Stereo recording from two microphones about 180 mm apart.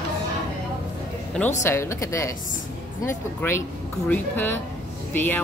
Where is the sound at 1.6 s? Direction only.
15° left (ahead or behind).